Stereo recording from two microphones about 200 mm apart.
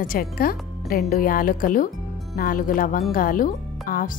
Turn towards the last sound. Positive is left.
turn(degrees=45)  # may be behind; listen again after turning